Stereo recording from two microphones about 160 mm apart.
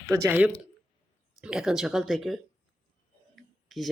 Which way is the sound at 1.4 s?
5° right (ahead or behind).